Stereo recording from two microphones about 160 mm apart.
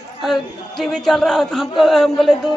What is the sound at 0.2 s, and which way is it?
A man's voice, centre (ahead or behind).